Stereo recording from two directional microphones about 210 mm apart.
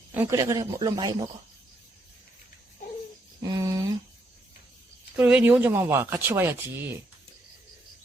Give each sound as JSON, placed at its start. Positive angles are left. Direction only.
{"t": 0.1, "sound": "speech", "side_deg": -10}
{"t": 3.4, "sound": "speech", "side_deg": -20}
{"t": 5.1, "sound": "speech", "side_deg": -5}